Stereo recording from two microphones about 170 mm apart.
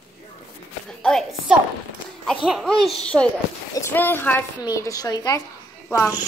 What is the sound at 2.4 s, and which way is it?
A woman's voice, centre (ahead or behind).